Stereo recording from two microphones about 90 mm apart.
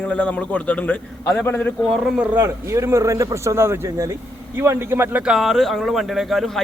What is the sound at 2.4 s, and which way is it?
Speech, 35° right (ahead or behind).